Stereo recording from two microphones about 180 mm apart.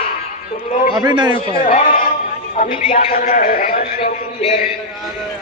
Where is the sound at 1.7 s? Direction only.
50° left (ahead or behind).